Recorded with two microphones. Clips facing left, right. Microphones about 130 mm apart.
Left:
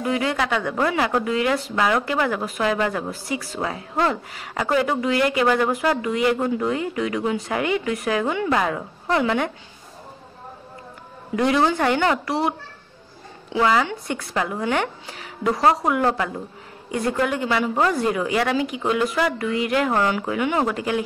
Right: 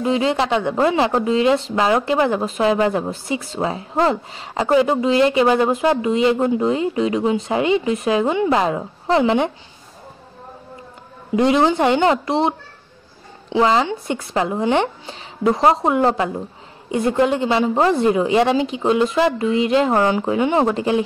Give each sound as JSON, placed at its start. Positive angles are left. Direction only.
{"t": 0.0, "sound": "speech", "side_deg": -25}
{"t": 11.3, "sound": "speech", "side_deg": -20}